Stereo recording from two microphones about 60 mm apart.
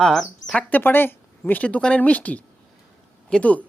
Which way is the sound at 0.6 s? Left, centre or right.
Left.